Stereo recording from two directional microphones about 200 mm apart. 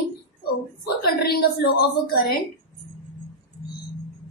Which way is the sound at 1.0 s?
50° left (ahead or behind).